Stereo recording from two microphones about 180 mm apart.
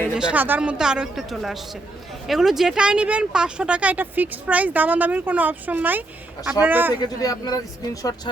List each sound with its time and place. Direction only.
0.1 s speech: 5° right (ahead or behind)
6.9 s speech: 20° left (ahead or behind)